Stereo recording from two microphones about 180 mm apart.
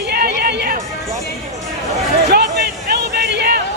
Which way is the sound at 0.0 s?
60° right (ahead or behind).